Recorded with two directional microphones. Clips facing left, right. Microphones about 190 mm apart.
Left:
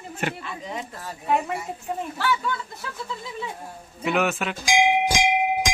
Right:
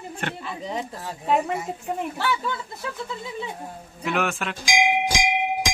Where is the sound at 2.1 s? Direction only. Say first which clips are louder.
Left 4 dB; 20° right (ahead or behind).